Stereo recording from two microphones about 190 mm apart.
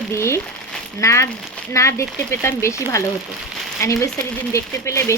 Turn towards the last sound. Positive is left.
turn(degrees=15)  # may be behind; listen again after turning